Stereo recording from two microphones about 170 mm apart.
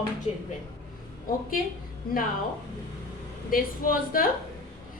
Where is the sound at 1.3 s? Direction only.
55° left (ahead or behind).